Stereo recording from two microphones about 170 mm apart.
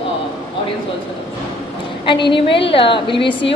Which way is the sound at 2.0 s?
30° left (ahead or behind).